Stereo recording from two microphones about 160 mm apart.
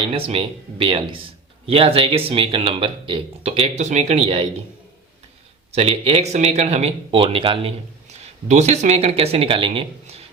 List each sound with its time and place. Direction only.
0.1 s speech: 35° right (ahead or behind)
5.7 s speech: 40° right (ahead or behind)
8.4 s speech: 45° right (ahead or behind)